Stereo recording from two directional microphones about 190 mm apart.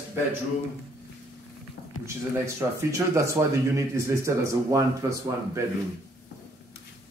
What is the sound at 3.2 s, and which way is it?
Speech, 15° right (ahead or behind).